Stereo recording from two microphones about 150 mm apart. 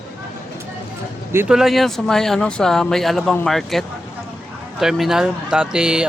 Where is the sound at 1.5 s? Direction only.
Centre (ahead or behind).